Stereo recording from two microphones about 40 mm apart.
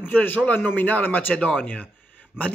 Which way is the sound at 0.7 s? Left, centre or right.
Left.